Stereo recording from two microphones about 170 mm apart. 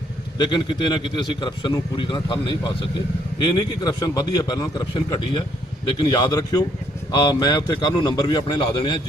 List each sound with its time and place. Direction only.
0.3 s a man's voice: 25° left (ahead or behind)